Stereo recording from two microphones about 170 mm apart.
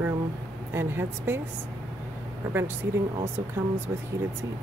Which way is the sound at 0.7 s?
15° right (ahead or behind).